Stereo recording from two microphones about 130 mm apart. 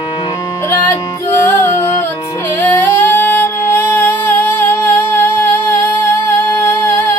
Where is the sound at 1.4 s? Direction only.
20° left (ahead or behind).